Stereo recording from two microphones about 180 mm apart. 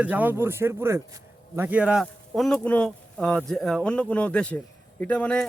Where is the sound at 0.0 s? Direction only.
10° right (ahead or behind).